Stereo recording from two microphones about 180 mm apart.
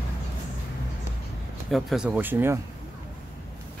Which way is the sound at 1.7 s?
5° right (ahead or behind).